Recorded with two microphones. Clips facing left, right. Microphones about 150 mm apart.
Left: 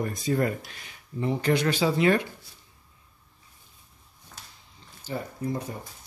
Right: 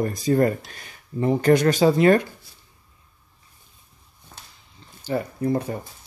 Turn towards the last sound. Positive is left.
turn(degrees=-60)  # may be behind; listen again after turning